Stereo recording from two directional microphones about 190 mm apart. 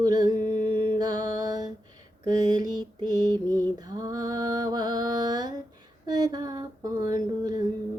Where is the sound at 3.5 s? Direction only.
20° right (ahead or behind).